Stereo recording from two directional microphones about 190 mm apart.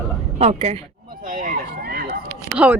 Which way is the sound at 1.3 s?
45° right (ahead or behind).